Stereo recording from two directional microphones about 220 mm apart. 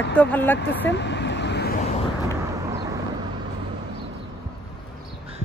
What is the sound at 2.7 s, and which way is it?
Vehicle, 15° right (ahead or behind).